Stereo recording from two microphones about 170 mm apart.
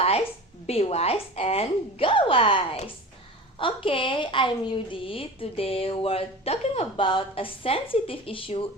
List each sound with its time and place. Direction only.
0.7 s a woman's voice: 35° left (ahead or behind)